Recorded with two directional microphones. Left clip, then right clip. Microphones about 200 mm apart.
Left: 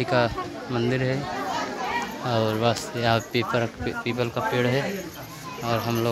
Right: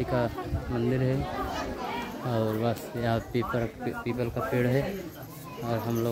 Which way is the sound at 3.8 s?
50° left (ahead or behind).